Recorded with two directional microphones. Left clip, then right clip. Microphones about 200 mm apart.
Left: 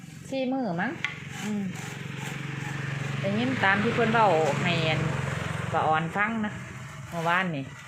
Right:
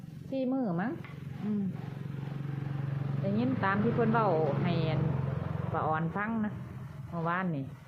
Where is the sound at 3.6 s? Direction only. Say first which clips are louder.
Left 7 dB; 10° left (ahead or behind).